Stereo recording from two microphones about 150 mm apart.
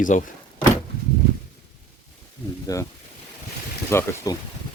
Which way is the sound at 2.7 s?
25° left (ahead or behind).